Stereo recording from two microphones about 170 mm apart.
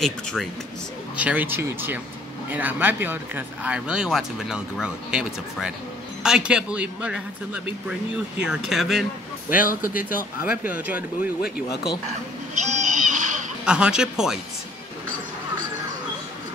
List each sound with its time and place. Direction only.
0.0 s speech: centre (ahead or behind)
1.1 s a man's voice: 10° right (ahead or behind)
9.6 s speech: 55° left (ahead or behind)
10.6 s a man's voice: 10° right (ahead or behind)
11.4 s speech: 70° left (ahead or behind)
12.5 s a sound: 45° right (ahead or behind)
13.7 s speech: 5° right (ahead or behind)